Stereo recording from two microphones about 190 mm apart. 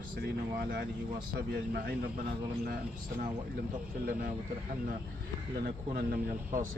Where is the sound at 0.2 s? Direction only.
60° right (ahead or behind).